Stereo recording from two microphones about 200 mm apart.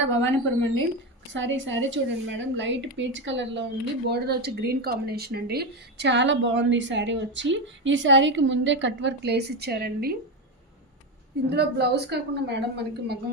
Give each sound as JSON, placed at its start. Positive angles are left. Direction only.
{"t": 0.2, "sound": "a woman's voice", "side_deg": 10}
{"t": 1.3, "sound": "a woman's voice", "side_deg": -70}
{"t": 4.1, "sound": "speech", "side_deg": -55}
{"t": 11.4, "sound": "speech", "side_deg": -55}